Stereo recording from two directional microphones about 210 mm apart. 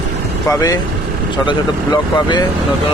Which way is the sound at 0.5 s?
15° left (ahead or behind).